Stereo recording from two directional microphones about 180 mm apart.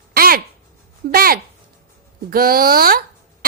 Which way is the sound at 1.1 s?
55° right (ahead or behind).